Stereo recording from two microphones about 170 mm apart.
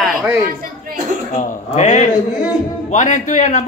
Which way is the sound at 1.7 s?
45° left (ahead or behind).